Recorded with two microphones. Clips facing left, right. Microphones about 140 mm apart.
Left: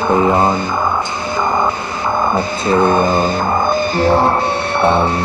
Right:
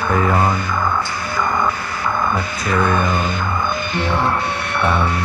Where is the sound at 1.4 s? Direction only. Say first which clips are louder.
Left 3 dB; 25° left (ahead or behind).